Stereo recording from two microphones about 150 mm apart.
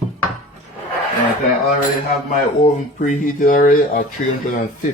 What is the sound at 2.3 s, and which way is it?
Speech, 55° left (ahead or behind).